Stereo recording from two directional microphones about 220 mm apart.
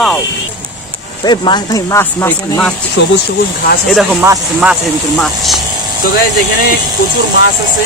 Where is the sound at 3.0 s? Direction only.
50° left (ahead or behind).